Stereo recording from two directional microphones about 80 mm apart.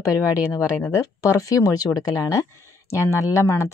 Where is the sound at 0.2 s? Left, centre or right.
Left.